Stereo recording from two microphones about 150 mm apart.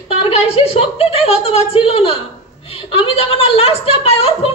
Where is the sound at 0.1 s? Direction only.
40° left (ahead or behind).